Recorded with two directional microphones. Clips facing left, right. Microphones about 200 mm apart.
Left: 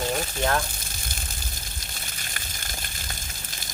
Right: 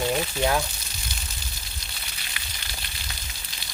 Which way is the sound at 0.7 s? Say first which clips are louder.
Left 1 dB; 50° left (ahead or behind).